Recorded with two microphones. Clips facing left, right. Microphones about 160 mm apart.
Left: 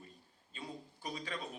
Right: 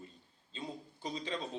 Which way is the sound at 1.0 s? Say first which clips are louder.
Right 4 dB; 25° right (ahead or behind).